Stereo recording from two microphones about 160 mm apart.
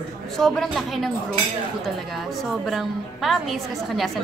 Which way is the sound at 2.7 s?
Centre (ahead or behind).